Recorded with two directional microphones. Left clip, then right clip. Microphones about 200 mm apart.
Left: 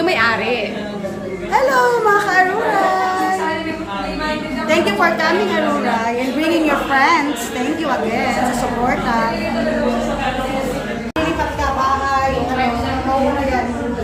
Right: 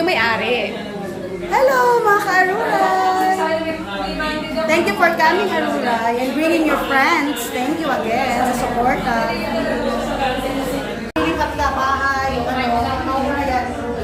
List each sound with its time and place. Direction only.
0.0 s a child's voice: 5° left (ahead or behind)
4.7 s a woman's voice: 5° left (ahead or behind)
6.9 s a child's voice: centre (ahead or behind)